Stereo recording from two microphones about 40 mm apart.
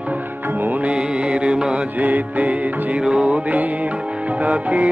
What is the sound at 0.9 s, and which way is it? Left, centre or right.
Music, right.